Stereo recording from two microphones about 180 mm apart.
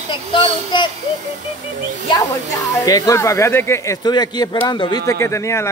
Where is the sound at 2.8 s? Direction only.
20° left (ahead or behind).